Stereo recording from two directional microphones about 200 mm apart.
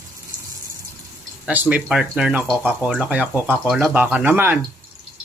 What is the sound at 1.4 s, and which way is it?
Speech, 5° right (ahead or behind).